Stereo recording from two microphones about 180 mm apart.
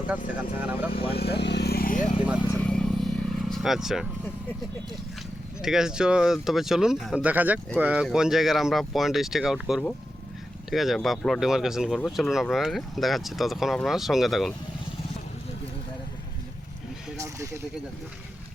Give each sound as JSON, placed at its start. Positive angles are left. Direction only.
{"t": 0.6, "sound": "speech", "side_deg": -10}
{"t": 1.1, "sound": "vehicle", "side_deg": 65}
{"t": 2.2, "sound": "speech", "side_deg": -5}
{"t": 2.6, "sound": "vehicle", "side_deg": 5}
{"t": 5.6, "sound": "speech", "side_deg": -5}